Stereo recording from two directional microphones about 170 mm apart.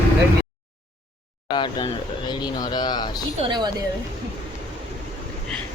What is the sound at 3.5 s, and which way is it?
Speech, 25° right (ahead or behind).